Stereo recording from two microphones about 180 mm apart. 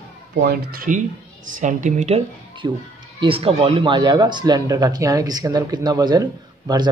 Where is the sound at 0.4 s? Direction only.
55° right (ahead or behind).